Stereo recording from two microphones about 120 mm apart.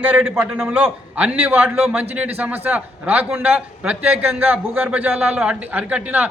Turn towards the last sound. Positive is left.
turn(degrees=-10)  # may be behind; listen again after turning